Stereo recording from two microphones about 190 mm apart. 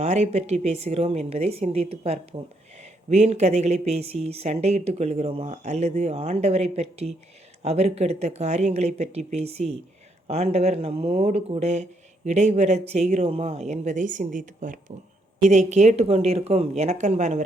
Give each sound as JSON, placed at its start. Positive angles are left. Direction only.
{"t": 0.0, "sound": "a woman's voice", "side_deg": -35}